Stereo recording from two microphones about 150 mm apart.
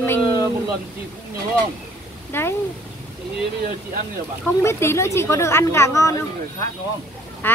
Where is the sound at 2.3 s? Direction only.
15° left (ahead or behind).